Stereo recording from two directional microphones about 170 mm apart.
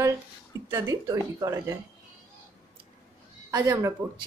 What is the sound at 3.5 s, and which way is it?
Speech, 20° right (ahead or behind).